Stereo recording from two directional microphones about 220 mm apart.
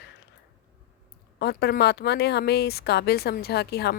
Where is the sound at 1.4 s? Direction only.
45° left (ahead or behind).